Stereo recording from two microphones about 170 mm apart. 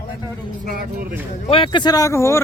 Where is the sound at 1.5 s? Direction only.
30° left (ahead or behind).